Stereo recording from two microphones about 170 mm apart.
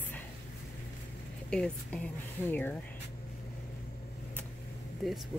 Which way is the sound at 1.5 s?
5° left (ahead or behind).